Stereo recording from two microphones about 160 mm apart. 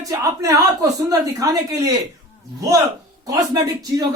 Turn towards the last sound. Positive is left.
turn(degrees=-25)  # may be behind; listen again after turning